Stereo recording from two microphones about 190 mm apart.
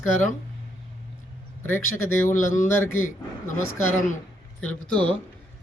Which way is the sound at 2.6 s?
10° left (ahead or behind).